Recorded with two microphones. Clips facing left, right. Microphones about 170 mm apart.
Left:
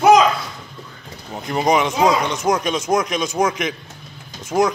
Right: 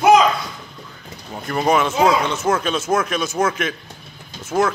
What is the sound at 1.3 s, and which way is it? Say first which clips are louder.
Speech: even; 15° left (ahead or behind).